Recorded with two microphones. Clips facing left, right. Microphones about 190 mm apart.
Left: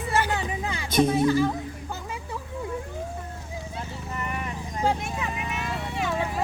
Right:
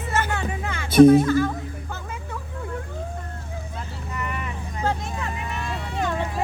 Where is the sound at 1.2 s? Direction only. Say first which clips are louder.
Even; 15° left (ahead or behind).